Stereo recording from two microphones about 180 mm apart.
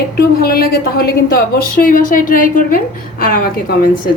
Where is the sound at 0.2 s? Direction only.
55° left (ahead or behind).